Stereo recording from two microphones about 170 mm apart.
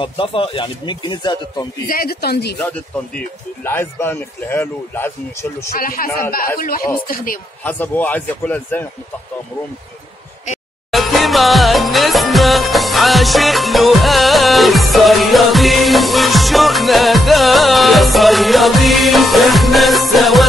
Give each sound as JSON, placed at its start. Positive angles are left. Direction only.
{"t": 0.0, "sound": "speech", "side_deg": 30}
{"t": 1.9, "sound": "speech", "side_deg": 60}
{"t": 3.2, "sound": "speech", "side_deg": 10}
{"t": 5.7, "sound": "speech", "side_deg": 55}
{"t": 7.6, "sound": "speech", "side_deg": 10}
{"t": 10.9, "sound": "music", "side_deg": 0}